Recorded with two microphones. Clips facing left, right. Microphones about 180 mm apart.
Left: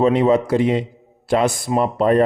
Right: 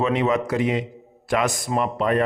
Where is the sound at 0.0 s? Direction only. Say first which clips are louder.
Left 6 dB; 35° left (ahead or behind).